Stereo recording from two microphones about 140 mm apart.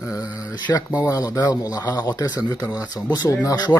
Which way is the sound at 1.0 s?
25° left (ahead or behind).